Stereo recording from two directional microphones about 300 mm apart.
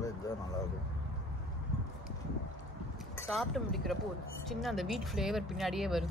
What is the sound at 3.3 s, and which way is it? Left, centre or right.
Speech, centre.